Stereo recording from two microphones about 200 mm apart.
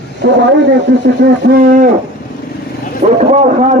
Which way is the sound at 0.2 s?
60° right (ahead or behind).